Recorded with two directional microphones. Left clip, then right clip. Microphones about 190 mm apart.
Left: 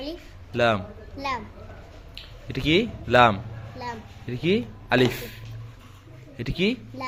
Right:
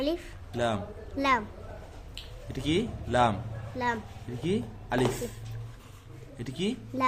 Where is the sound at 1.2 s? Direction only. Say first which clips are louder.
Right 4 dB; 50° right (ahead or behind).